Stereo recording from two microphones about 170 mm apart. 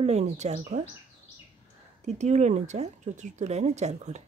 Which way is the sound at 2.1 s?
45° right (ahead or behind).